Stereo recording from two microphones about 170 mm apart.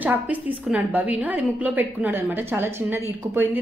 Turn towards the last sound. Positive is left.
turn(degrees=-10)  # may be behind; listen again after turning